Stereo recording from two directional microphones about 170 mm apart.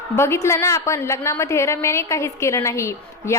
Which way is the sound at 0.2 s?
15° left (ahead or behind).